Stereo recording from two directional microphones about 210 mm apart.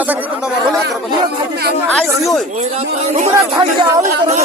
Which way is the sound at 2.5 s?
35° right (ahead or behind).